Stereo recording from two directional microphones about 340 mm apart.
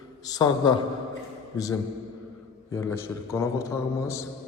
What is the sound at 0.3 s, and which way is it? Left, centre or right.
Speech, centre.